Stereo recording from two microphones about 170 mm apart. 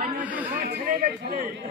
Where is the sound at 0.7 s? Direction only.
65° right (ahead or behind).